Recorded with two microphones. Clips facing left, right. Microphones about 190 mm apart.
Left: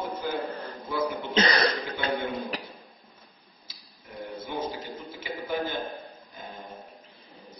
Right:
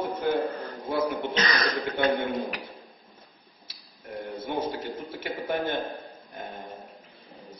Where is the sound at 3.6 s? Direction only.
55° right (ahead or behind).